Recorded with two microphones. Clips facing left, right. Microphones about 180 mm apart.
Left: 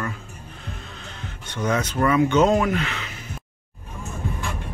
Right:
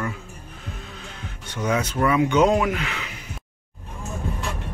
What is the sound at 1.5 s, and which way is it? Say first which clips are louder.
Speech: even; 10° right (ahead or behind).